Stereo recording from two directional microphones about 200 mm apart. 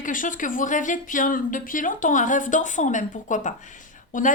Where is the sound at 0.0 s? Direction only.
40° left (ahead or behind).